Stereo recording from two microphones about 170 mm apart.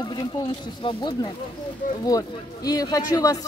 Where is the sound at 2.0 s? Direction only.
20° left (ahead or behind).